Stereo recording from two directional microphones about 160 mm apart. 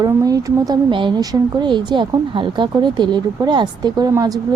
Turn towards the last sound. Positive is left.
turn(degrees=-25)  # may be behind; listen again after turning